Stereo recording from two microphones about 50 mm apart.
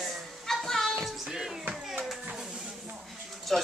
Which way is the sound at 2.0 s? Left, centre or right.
Centre.